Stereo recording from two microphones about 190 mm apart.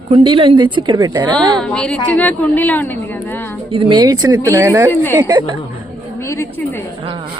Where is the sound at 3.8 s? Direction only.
25° right (ahead or behind).